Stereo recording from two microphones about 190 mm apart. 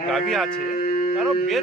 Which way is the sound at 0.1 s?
Centre (ahead or behind).